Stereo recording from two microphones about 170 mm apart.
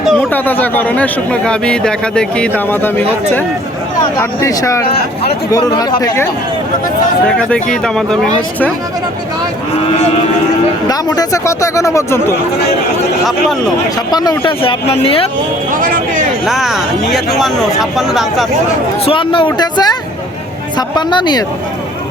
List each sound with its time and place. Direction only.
0.0 s a sound: centre (ahead or behind)
0.3 s speech: 10° left (ahead or behind)
7.3 s speech: 5° left (ahead or behind)
10.8 s speech: 20° left (ahead or behind)
14.1 s speech: 25° left (ahead or behind)
15.7 s speech: 50° right (ahead or behind)
16.5 s speech: centre (ahead or behind)
19.0 s speech: 30° left (ahead or behind)